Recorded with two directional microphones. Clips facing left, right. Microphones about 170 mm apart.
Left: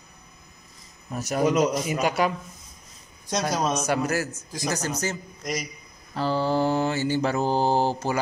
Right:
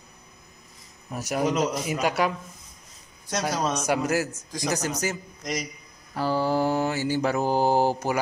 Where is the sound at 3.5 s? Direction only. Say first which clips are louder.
Left 2 dB; 10° left (ahead or behind).